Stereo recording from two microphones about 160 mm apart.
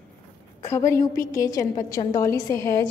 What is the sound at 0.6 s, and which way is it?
A woman's voice, 20° left (ahead or behind).